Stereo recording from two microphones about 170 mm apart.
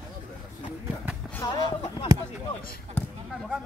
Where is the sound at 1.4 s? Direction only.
30° left (ahead or behind).